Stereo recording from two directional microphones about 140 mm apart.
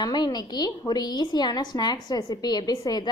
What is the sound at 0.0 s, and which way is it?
A woman's voice, 30° left (ahead or behind).